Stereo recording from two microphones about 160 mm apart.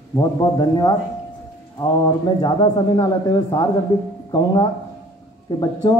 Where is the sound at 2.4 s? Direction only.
30° left (ahead or behind).